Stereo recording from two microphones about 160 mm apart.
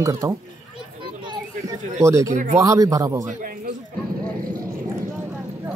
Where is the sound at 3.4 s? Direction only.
65° right (ahead or behind).